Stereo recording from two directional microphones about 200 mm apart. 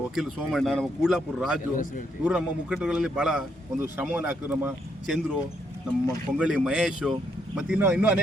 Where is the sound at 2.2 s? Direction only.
5° right (ahead or behind).